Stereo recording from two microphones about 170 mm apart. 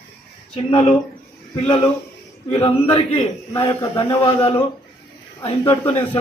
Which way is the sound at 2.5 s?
30° left (ahead or behind).